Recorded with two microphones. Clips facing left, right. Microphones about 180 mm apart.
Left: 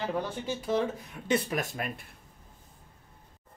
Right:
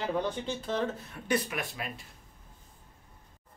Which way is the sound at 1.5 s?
45° left (ahead or behind).